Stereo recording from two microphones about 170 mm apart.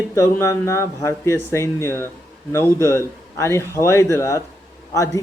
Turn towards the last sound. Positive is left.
turn(degrees=20)  # may be behind; listen again after turning